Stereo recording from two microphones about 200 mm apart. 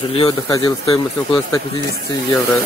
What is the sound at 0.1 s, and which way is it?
Speech, 25° left (ahead or behind).